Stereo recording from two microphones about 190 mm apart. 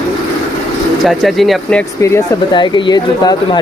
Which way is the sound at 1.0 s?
Centre (ahead or behind).